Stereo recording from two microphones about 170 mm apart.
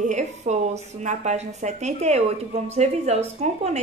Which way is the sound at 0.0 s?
45° right (ahead or behind).